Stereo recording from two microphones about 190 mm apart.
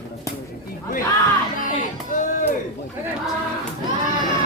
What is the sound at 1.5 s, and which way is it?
Music, 45° left (ahead or behind).